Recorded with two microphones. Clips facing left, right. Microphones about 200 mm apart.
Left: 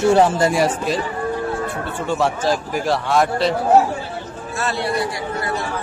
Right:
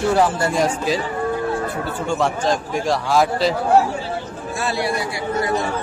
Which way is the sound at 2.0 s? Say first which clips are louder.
Left 1 dB; 5° left (ahead or behind).